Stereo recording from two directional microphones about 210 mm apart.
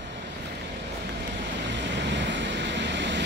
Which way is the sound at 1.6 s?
60° right (ahead or behind).